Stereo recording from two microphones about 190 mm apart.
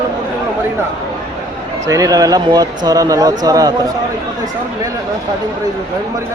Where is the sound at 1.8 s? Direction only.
15° right (ahead or behind).